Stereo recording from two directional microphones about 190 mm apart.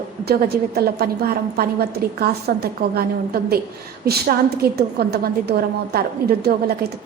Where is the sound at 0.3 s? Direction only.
55° right (ahead or behind).